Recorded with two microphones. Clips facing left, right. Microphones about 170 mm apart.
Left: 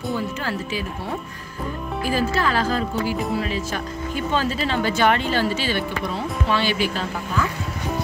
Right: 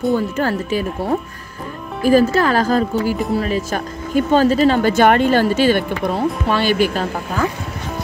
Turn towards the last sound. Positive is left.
turn(degrees=-45)  # may be behind; listen again after turning